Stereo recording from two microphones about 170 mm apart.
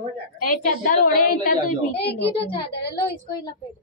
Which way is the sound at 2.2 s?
35° left (ahead or behind).